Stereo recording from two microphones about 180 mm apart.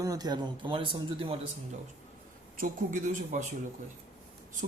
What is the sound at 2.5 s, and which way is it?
Speech, 50° right (ahead or behind).